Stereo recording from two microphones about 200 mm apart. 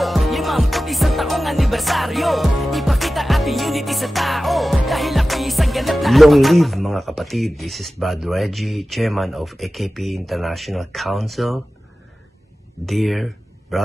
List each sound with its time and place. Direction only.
0.0 s music: centre (ahead or behind)
12.8 s speech: centre (ahead or behind)